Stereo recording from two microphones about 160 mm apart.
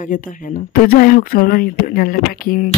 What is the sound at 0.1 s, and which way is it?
Speech, 55° left (ahead or behind).